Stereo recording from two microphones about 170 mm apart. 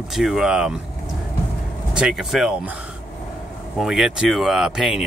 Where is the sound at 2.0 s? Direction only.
5° right (ahead or behind).